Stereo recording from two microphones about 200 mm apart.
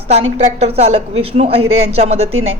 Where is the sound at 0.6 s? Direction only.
30° right (ahead or behind).